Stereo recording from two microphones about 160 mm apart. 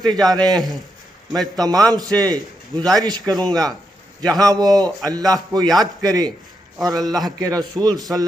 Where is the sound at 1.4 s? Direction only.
25° right (ahead or behind).